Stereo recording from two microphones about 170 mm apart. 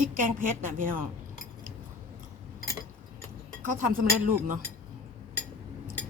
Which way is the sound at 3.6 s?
55° right (ahead or behind).